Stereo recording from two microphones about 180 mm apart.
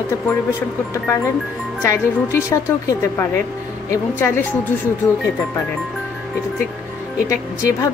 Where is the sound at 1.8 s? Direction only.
15° left (ahead or behind).